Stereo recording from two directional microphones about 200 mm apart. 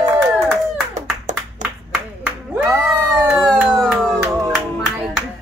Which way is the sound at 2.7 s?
5° right (ahead or behind).